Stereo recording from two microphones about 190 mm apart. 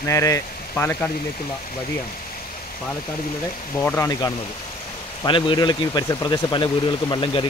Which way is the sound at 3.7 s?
10° left (ahead or behind).